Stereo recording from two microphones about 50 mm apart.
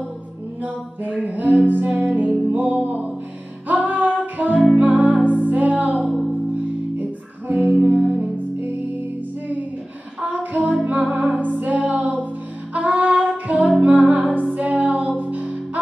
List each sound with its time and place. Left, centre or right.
1.0 s music: right
6.0 s music: centre
7.0 s music: right
10.2 s music: right